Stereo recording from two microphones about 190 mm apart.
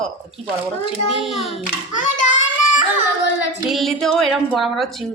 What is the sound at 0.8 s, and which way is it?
Speech, 30° left (ahead or behind).